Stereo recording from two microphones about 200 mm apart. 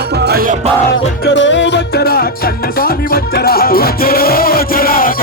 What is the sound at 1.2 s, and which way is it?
Music, 65° left (ahead or behind).